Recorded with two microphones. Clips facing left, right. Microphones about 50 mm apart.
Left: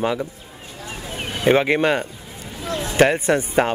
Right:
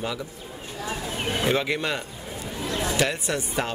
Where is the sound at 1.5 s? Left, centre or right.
Left.